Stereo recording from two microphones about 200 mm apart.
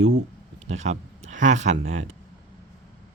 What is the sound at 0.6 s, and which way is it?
Speech, 35° right (ahead or behind).